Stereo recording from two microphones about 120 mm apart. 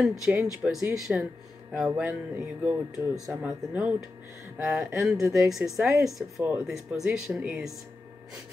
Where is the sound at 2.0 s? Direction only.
15° right (ahead or behind).